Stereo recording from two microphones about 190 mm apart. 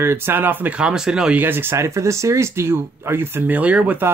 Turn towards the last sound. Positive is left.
turn(degrees=-10)  # may be behind; listen again after turning